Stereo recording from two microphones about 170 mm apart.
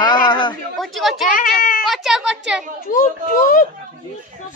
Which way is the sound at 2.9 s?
50° left (ahead or behind).